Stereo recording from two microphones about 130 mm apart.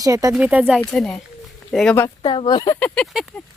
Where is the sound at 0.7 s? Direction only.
5° left (ahead or behind).